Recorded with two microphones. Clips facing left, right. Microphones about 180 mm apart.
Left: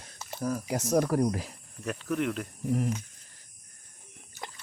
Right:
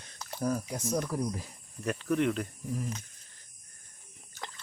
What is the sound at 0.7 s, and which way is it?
Speech, 75° left (ahead or behind).